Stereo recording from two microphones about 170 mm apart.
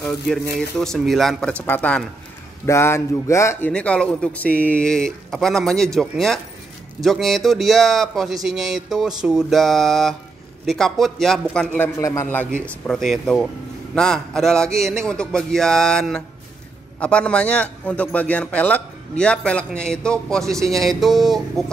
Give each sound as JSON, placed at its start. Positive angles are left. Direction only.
{"t": 0.0, "sound": "a man's voice", "side_deg": 5}
{"t": 3.7, "sound": "a man's voice", "side_deg": 5}
{"t": 12.0, "sound": "a man's voice", "side_deg": 15}